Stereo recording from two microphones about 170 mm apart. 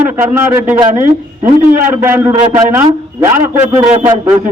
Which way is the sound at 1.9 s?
10° right (ahead or behind).